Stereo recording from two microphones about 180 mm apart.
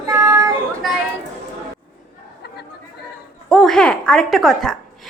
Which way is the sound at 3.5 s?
Centre (ahead or behind).